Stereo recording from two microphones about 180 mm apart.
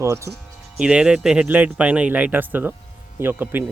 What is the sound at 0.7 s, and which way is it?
Speech, 5° right (ahead or behind).